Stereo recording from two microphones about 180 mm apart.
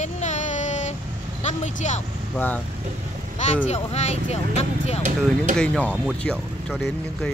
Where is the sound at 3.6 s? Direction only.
35° left (ahead or behind).